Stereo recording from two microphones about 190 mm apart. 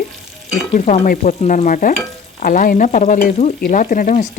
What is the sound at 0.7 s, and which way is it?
A woman's voice, 50° left (ahead or behind).